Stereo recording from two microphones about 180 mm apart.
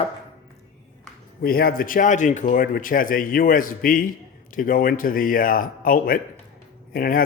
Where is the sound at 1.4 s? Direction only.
55° left (ahead or behind).